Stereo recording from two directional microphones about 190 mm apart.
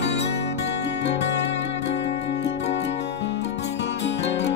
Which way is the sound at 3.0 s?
65° left (ahead or behind).